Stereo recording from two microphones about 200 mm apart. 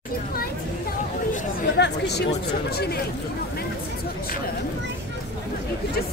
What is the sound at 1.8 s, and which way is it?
Chatter, 55° left (ahead or behind).